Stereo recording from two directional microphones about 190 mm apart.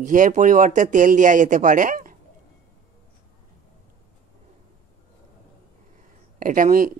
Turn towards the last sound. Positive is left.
turn(degrees=-45)  # may be behind; listen again after turning